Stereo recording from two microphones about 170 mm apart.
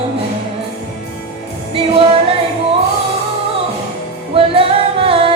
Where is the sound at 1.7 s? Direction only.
30° right (ahead or behind).